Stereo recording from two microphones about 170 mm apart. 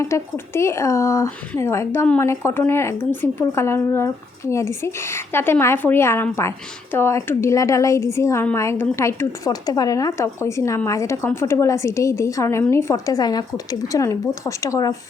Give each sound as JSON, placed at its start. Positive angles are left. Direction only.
{"t": 0.0, "sound": "a woman's voice", "side_deg": 15}